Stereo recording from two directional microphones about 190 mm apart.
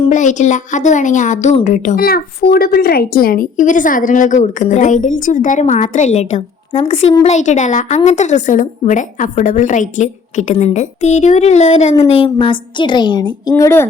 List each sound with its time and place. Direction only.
0.1 s a woman's voice: 40° left (ahead or behind)
7.3 s a woman's voice: 40° left (ahead or behind); by 13.8 s 15° left (ahead or behind)